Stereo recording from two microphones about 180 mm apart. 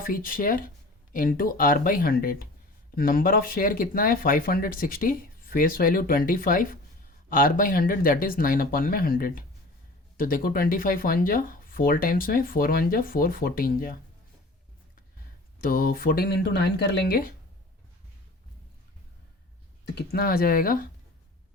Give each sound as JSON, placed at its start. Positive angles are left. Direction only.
{"t": 0.0, "sound": "speech", "side_deg": 50}
{"t": 15.6, "sound": "speech", "side_deg": 55}
{"t": 19.8, "sound": "speech", "side_deg": 65}